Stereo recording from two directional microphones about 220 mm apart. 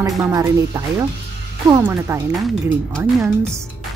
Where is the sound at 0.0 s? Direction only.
15° right (ahead or behind).